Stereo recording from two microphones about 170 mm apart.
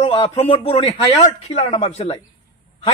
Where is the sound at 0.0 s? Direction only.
30° left (ahead or behind).